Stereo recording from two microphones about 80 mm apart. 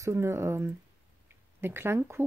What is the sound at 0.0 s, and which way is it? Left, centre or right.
Speech, right.